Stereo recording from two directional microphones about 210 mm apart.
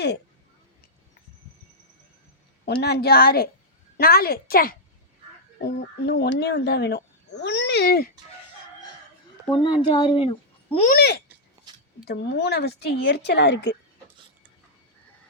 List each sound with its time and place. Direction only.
2.8 s speech: 50° left (ahead or behind)
9.5 s a child's voice: 25° left (ahead or behind)
10.8 s speech: 50° left (ahead or behind)